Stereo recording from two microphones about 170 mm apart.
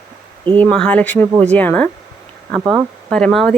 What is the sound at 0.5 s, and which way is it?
A woman's voice, 10° left (ahead or behind).